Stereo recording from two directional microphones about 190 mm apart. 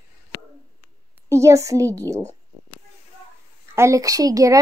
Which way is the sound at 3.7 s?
15° right (ahead or behind).